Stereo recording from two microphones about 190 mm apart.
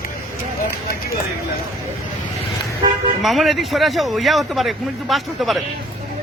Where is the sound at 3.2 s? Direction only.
Centre (ahead or behind).